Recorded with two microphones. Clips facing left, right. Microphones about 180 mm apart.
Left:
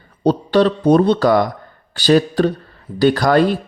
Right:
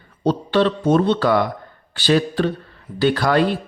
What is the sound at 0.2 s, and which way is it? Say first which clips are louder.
Speech: left 4 dB; 40° left (ahead or behind).